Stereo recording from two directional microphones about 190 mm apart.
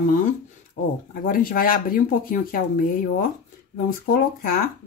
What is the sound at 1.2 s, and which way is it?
Speech, 45° left (ahead or behind).